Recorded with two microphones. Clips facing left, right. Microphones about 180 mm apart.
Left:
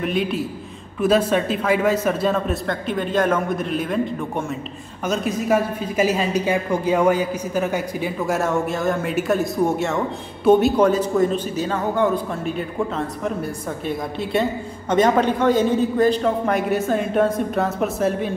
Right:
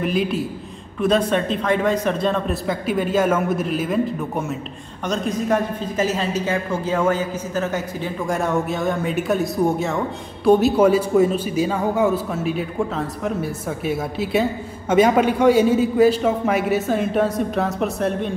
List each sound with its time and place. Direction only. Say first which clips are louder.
0.0 s a woman's voice: right 1 dB; centre (ahead or behind)
8.4 s speech: right 2 dB; centre (ahead or behind)